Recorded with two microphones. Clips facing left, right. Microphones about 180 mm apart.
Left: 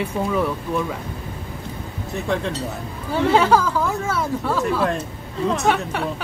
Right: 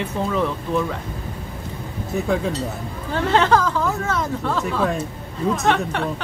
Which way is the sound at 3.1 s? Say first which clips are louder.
Left 1 dB; 10° left (ahead or behind).